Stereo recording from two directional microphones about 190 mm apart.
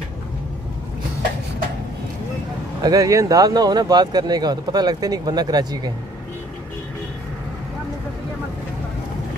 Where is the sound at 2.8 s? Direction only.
20° right (ahead or behind).